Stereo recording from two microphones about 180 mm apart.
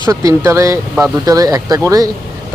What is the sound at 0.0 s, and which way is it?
Speech, 20° right (ahead or behind).